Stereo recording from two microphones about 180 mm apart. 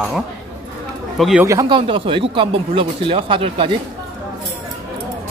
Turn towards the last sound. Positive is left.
turn(degrees=-30)  # may be behind; listen again after turning